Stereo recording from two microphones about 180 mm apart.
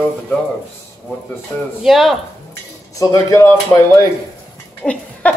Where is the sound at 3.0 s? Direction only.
15° left (ahead or behind).